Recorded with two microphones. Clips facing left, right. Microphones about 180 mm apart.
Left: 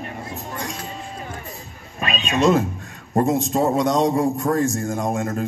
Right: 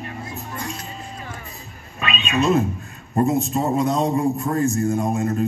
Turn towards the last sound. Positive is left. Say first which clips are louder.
# right 2 dB
turn(degrees=90)